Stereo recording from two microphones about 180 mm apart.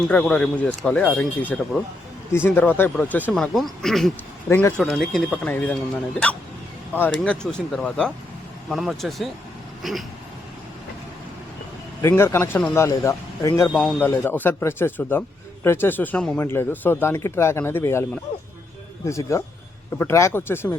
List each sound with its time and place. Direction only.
0.1 s a man's voice: 5° left (ahead or behind)
12.0 s speech: 15° left (ahead or behind)